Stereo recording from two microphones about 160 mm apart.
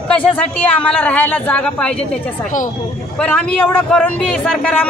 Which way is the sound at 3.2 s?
5° left (ahead or behind).